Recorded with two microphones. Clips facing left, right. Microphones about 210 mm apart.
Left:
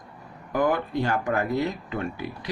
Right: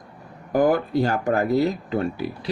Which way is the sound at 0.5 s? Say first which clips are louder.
Right 5 dB; 40° right (ahead or behind).